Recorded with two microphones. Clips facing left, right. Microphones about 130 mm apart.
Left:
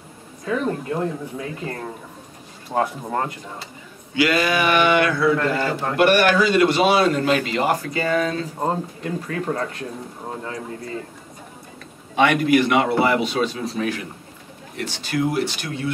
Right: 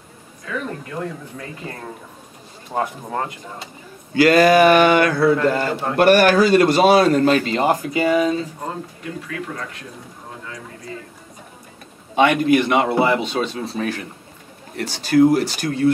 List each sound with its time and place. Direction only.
0.5 s speech: 30° left (ahead or behind)
2.7 s speech: centre (ahead or behind)
4.1 s a man's voice: 45° right (ahead or behind)
5.4 s speech: 5° right (ahead or behind)
5.9 s a man's voice: 40° right (ahead or behind)
7.6 s speech: 15° right (ahead or behind)
9.3 s speech: 40° left (ahead or behind)
12.3 s a man's voice: 25° right (ahead or behind)